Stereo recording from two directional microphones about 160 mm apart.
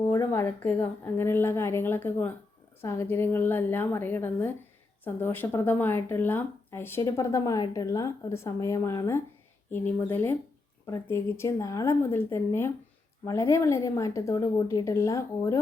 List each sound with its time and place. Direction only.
0.1 s a woman's voice: 15° left (ahead or behind)